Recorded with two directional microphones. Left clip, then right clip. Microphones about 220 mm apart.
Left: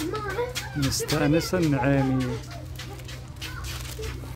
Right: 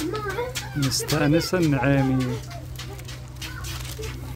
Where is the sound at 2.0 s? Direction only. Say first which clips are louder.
Right 2 dB; 55° right (ahead or behind).